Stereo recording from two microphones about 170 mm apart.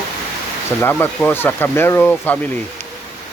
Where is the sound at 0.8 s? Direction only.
10° left (ahead or behind).